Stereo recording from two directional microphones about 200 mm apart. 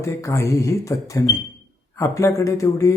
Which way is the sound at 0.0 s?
15° left (ahead or behind).